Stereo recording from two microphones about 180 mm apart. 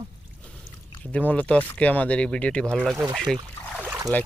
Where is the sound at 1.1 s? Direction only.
10° left (ahead or behind).